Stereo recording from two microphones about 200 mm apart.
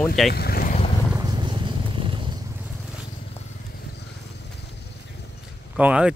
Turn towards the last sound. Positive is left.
turn(degrees=-5)  # may be behind; listen again after turning